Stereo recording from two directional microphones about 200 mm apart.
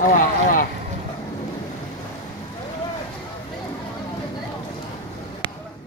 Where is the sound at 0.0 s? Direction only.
40° left (ahead or behind).